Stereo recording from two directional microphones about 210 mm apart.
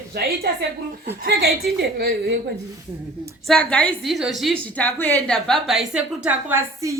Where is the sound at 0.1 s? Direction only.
50° right (ahead or behind).